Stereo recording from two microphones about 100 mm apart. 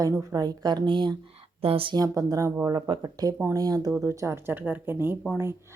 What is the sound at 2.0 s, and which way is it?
Speech, 35° right (ahead or behind).